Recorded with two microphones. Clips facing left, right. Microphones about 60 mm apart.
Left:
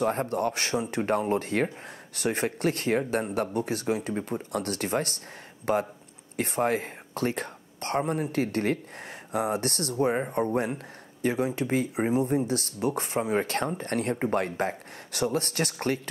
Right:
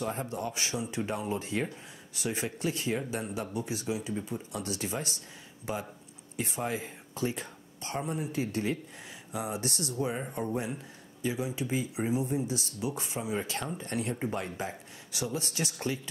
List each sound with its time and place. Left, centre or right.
0.0 s speech: left